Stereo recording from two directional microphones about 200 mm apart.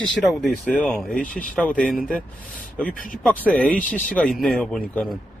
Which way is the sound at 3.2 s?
Centre (ahead or behind).